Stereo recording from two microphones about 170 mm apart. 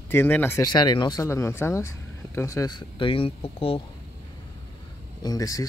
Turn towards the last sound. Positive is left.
turn(degrees=20)  # may be behind; listen again after turning